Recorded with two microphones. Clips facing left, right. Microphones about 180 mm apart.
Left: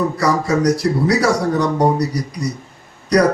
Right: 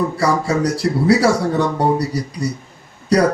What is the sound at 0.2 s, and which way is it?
Speech, 30° right (ahead or behind).